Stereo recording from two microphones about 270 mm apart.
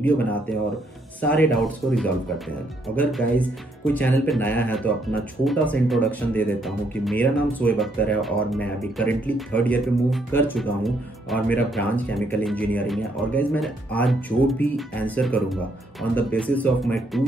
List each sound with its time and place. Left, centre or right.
0.0 s speech: centre